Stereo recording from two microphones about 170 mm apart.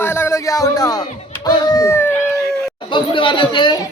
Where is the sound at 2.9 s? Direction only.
30° left (ahead or behind).